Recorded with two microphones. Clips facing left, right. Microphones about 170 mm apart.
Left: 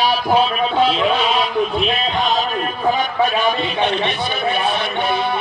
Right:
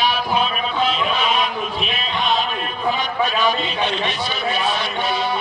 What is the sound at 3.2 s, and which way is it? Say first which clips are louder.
A man's voice: left 2 dB; 55° left (ahead or behind).